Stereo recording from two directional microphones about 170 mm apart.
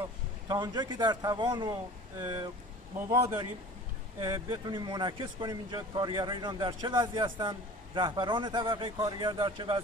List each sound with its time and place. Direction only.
0.5 s speech: 25° right (ahead or behind)